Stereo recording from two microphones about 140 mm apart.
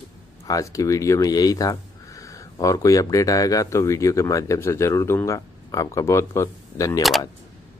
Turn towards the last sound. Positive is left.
turn(degrees=20)  # may be behind; listen again after turning